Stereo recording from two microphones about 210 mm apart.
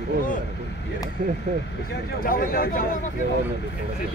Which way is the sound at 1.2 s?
35° right (ahead or behind).